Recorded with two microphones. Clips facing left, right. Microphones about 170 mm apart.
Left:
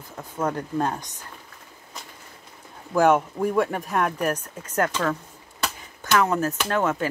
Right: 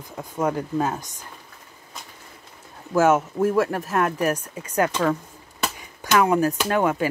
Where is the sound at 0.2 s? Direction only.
10° right (ahead or behind).